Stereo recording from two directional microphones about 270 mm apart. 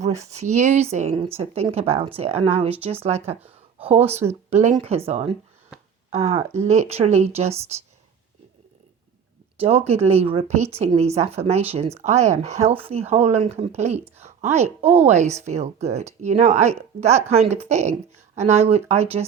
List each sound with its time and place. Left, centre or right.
0.0 s speech: right
9.6 s speech: right